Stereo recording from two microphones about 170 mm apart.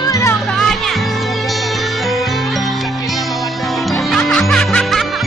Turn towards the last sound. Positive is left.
turn(degrees=0)  # may be behind; listen again after turning